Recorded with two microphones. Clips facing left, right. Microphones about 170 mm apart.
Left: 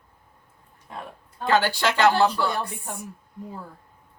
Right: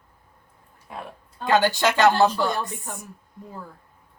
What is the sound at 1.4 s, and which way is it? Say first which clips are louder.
Speech: right 2 dB; 15° right (ahead or behind).